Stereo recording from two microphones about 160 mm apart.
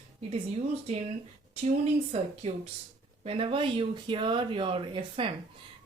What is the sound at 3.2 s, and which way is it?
Speech, 35° right (ahead or behind).